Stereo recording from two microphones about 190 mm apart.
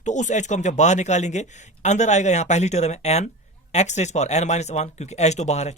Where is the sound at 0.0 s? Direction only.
40° left (ahead or behind).